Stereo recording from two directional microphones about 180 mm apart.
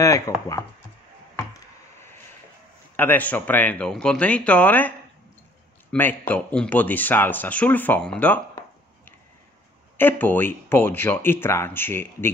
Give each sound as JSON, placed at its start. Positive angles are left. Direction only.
{"t": 0.0, "sound": "speech", "side_deg": 15}
{"t": 3.0, "sound": "speech", "side_deg": 10}